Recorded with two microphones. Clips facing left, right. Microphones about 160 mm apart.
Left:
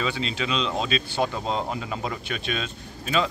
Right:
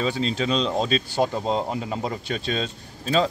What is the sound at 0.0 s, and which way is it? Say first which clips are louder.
A man's voice: right 4 dB; 35° right (ahead or behind).